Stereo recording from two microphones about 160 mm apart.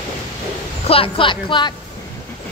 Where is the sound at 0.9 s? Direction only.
35° left (ahead or behind).